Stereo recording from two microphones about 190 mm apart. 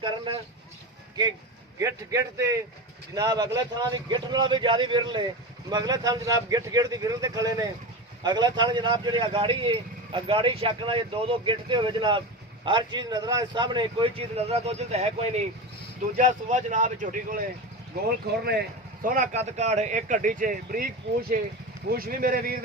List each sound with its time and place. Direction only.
0.0 s vehicle: 25° right (ahead or behind)
1.8 s a man's voice: 15° right (ahead or behind); by 17.4 s 45° right (ahead or behind)
19.0 s speech: 40° right (ahead or behind)